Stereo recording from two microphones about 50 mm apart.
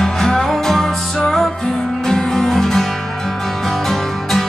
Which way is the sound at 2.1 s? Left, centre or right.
Centre.